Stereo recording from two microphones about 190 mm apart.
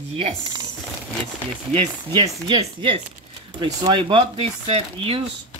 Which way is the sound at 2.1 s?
25° right (ahead or behind).